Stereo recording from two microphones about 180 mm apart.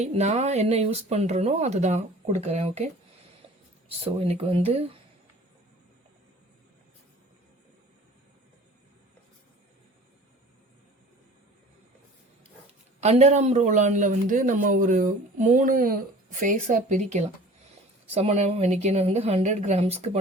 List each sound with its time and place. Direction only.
0.0 s speech: 40° right (ahead or behind)
13.0 s speech: 40° right (ahead or behind)